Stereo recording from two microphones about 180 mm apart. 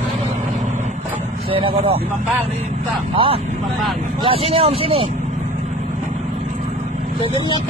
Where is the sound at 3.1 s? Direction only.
30° right (ahead or behind).